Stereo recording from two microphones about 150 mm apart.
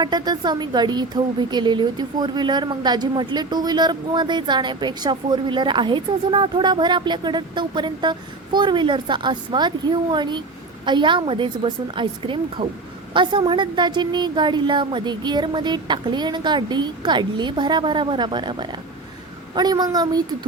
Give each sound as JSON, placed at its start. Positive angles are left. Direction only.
{"t": 0.0, "sound": "a woman's voice", "side_deg": -30}